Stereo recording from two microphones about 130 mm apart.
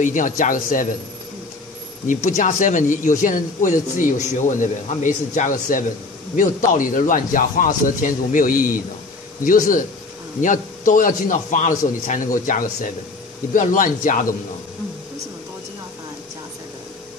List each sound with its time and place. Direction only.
0.0 s a man's voice: 75° left (ahead or behind)
2.0 s speech: 70° left (ahead or behind)
4.0 s a man's voice: 70° left (ahead or behind)
12.1 s a man's voice: 90° left